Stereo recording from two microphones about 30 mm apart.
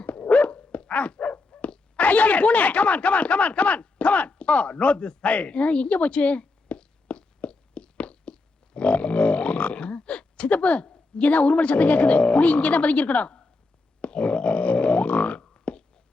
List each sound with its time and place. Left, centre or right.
0.0 s dog: left
1.1 s speech: left
6.4 s a sound: left
14.0 s grunt: left
15.7 s whispering: left